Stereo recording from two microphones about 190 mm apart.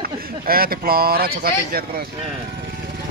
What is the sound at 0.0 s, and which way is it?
Speech, 50° right (ahead or behind).